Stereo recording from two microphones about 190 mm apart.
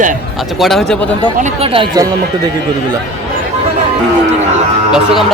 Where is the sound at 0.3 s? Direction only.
Centre (ahead or behind).